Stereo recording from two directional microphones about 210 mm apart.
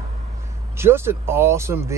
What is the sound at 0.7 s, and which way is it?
Speech, 10° right (ahead or behind).